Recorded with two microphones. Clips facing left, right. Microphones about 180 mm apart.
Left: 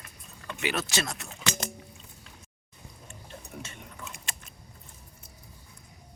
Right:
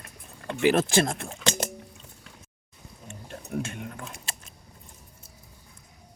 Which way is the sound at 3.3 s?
60° right (ahead or behind).